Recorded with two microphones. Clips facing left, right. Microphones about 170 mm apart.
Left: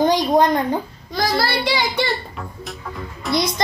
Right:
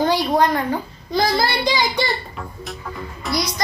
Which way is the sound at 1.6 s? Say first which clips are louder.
Right 1 dB; 15° right (ahead or behind).